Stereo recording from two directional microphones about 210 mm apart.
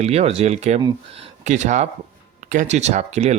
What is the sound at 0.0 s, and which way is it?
Speech, 30° right (ahead or behind).